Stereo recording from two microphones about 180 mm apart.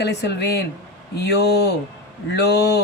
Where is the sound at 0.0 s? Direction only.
70° left (ahead or behind).